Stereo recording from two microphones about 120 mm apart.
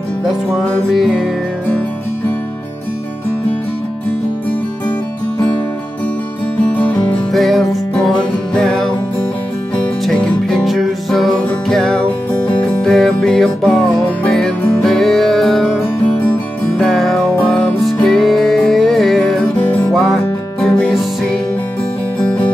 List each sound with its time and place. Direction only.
0.5 s music: centre (ahead or behind)
6.6 s music: 10° left (ahead or behind)
7.2 s music: centre (ahead or behind)
10.0 s music: 5° left (ahead or behind)